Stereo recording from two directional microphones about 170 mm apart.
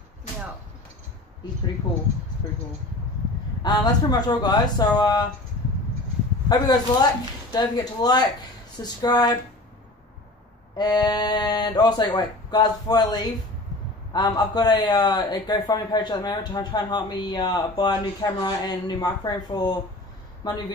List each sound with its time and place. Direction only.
3.6 s a man's voice: 25° left (ahead or behind)
6.5 s a man's voice: 25° left (ahead or behind)
10.8 s a man's voice: 25° left (ahead or behind)